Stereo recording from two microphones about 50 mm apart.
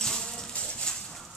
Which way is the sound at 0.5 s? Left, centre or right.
Centre.